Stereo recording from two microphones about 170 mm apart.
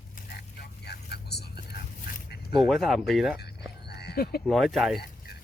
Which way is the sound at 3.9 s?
70° left (ahead or behind).